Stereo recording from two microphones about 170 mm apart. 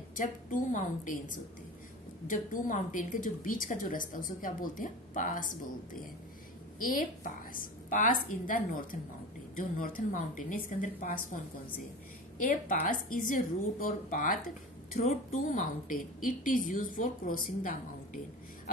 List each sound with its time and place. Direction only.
0.1 s a woman's voice: 50° left (ahead or behind)
6.8 s a woman's voice: 55° left (ahead or behind)
12.4 s a woman's voice: 50° left (ahead or behind)